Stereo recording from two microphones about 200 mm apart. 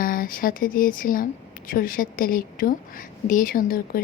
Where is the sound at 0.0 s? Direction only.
45° left (ahead or behind).